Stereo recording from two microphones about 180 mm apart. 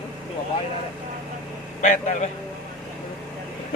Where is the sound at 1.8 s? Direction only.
40° left (ahead or behind).